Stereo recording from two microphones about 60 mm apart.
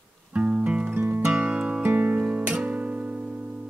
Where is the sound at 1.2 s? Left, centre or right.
Centre.